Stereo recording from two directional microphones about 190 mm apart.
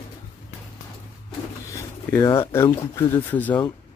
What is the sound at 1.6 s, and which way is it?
Speech, 15° left (ahead or behind).